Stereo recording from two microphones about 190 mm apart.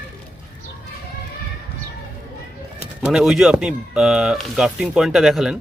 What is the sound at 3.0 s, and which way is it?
Speech, 5° right (ahead or behind).